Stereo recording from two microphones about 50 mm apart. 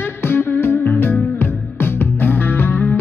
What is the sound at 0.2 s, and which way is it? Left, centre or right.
Music, left.